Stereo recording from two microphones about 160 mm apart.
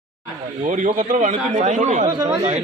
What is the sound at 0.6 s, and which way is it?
A man's voice, 55° right (ahead or behind).